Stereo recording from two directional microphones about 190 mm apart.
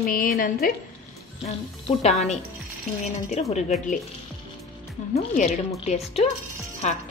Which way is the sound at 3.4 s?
35° left (ahead or behind).